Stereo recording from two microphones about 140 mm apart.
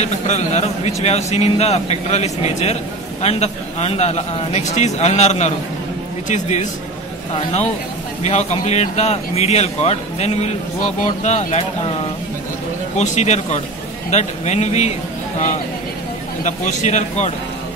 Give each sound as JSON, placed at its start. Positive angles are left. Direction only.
{"t": 0.0, "sound": "a man's voice", "side_deg": 55}
{"t": 8.2, "sound": "a man's voice", "side_deg": 55}
{"t": 12.9, "sound": "a man's voice", "side_deg": 55}
{"t": 16.4, "sound": "a man's voice", "side_deg": 60}